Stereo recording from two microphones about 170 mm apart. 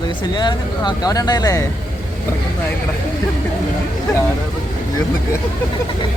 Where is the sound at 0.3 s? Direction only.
25° left (ahead or behind).